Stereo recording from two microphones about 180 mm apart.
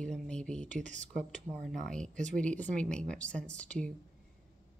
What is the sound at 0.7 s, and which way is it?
Speech, 40° right (ahead or behind).